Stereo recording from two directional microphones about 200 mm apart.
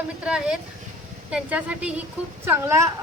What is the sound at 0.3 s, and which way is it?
A woman's voice, 5° right (ahead or behind).